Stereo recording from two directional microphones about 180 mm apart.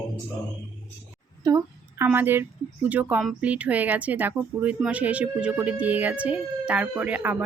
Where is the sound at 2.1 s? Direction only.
10° right (ahead or behind).